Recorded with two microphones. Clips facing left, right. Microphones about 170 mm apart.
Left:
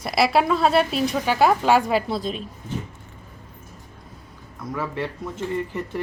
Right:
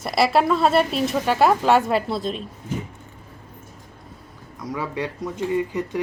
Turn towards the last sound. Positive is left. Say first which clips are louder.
# right 3 dB
turn(degrees=-15)  # may be behind; listen again after turning